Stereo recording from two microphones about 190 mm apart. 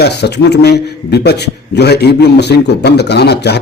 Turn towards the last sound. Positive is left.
turn(degrees=60)  # may be behind; listen again after turning